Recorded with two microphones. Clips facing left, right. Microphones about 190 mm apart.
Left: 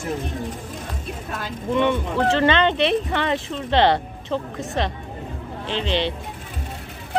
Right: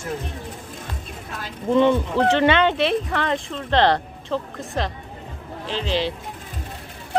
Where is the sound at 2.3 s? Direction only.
15° right (ahead or behind).